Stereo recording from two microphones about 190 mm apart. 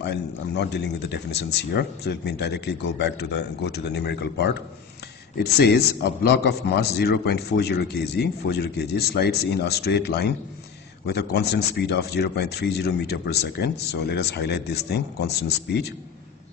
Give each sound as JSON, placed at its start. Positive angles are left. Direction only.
{"t": 0.0, "sound": "a man's voice", "side_deg": 60}